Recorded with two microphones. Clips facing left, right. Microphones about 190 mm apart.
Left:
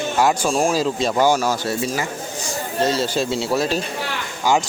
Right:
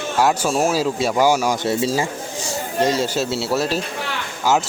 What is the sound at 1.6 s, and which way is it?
Speech, 25° right (ahead or behind).